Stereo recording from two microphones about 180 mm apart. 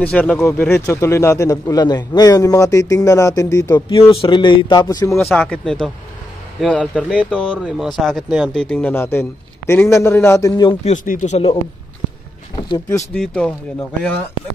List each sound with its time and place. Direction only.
0.0 s a man's voice: 5° left (ahead or behind)
10.7 s speech: 40° left (ahead or behind)
12.6 s speech: 25° left (ahead or behind)
13.1 s speech: 5° left (ahead or behind)